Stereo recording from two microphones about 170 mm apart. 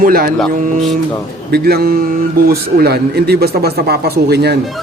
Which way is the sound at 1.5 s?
65° right (ahead or behind).